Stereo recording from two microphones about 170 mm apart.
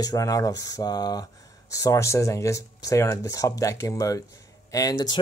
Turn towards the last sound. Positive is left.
turn(degrees=25)  # may be behind; listen again after turning